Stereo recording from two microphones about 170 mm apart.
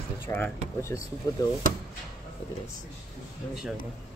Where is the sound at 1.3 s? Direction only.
20° left (ahead or behind).